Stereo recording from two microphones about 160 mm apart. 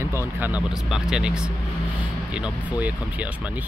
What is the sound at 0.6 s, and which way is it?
Speech, 5° right (ahead or behind).